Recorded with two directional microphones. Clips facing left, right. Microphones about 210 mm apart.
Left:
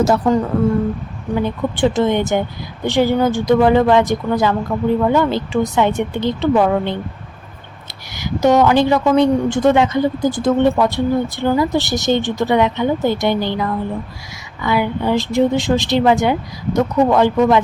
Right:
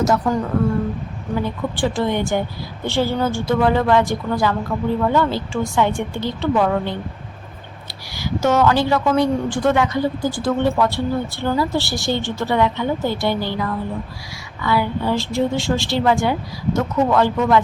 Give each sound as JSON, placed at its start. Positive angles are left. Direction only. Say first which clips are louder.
{"t": 0.0, "sound": "speech", "louder": "left 4 dB", "side_deg": 30}
{"t": 1.4, "sound": "a woman's voice", "louder": "left 5 dB", "side_deg": 20}
{"t": 8.1, "sound": "a woman's voice", "louder": "left 4 dB", "side_deg": 20}